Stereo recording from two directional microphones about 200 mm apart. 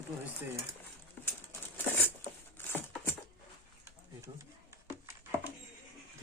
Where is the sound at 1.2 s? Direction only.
10° left (ahead or behind).